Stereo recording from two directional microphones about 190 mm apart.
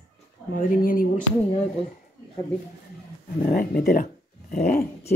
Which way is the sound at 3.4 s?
55° left (ahead or behind).